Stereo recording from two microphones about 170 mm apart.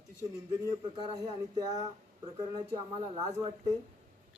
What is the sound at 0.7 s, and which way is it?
Speech, 25° right (ahead or behind).